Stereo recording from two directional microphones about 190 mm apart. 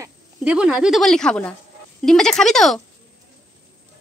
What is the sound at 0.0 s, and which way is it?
A woman's voice, 5° right (ahead or behind).